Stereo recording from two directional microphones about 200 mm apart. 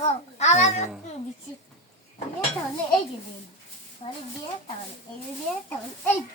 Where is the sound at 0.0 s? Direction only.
35° left (ahead or behind).